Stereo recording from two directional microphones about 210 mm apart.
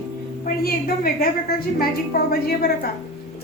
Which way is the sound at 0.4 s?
45° left (ahead or behind).